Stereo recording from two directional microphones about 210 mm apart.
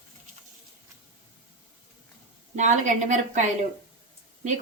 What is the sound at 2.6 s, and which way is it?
Speech, 35° right (ahead or behind).